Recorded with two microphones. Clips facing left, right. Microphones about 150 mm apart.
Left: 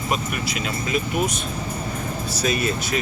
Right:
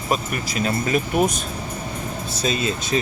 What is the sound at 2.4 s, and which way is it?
Speech, 25° right (ahead or behind).